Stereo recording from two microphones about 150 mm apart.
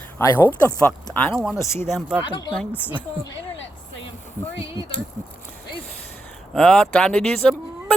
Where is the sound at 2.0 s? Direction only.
Centre (ahead or behind).